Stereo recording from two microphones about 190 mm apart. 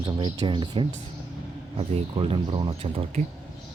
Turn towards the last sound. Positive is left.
turn(degrees=-30)  # may be behind; listen again after turning